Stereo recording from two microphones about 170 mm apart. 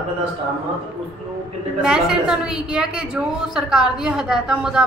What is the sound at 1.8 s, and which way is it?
A woman's voice, 5° right (ahead or behind).